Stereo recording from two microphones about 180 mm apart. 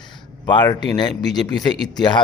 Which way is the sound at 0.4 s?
25° left (ahead or behind).